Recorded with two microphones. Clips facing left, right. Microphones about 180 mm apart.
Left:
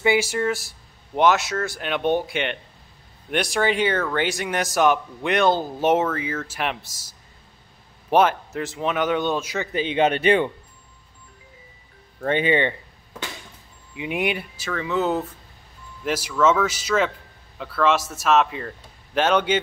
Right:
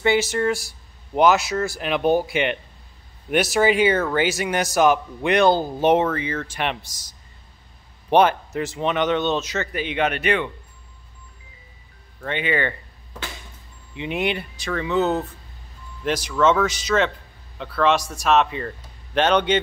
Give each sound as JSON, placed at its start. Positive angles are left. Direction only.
{"t": 0.0, "sound": "a man's voice", "side_deg": 10}
{"t": 8.1, "sound": "speech", "side_deg": 0}
{"t": 9.7, "sound": "speech", "side_deg": 30}
{"t": 12.2, "sound": "speech", "side_deg": 40}
{"t": 13.9, "sound": "a man's voice", "side_deg": 10}